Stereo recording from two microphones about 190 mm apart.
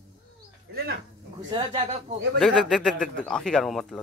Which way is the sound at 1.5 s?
30° right (ahead or behind).